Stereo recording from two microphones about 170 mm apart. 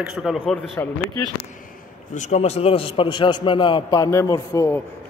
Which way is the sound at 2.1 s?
40° left (ahead or behind).